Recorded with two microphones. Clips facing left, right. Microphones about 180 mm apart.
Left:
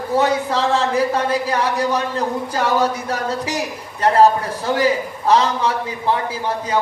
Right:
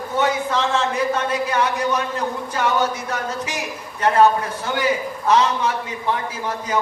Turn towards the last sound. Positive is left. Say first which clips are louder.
# left 3 dB
turn(degrees=30)  # may be behind; listen again after turning